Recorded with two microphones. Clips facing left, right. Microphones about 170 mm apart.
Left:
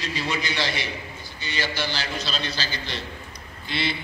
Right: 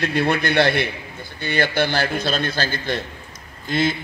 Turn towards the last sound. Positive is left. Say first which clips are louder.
# right 8 dB
turn(degrees=-45)  # may be behind; listen again after turning